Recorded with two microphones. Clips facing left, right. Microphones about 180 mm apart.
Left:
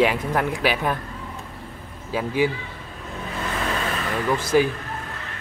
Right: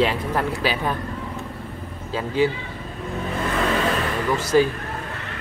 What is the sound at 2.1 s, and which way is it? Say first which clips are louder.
Speech: right 1 dB; 10° left (ahead or behind).